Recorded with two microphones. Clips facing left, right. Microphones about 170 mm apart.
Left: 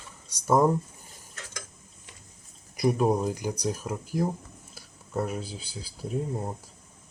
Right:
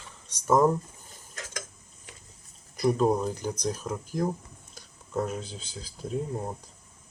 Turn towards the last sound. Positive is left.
turn(degrees=5)  # may be behind; listen again after turning